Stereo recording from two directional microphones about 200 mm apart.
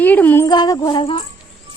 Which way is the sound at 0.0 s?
10° left (ahead or behind).